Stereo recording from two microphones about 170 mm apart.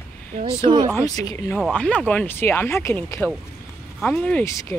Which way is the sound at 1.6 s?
5° left (ahead or behind).